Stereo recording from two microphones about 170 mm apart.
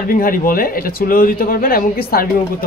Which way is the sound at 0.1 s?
55° left (ahead or behind).